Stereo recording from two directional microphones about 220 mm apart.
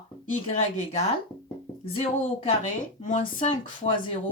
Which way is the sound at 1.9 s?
25° left (ahead or behind).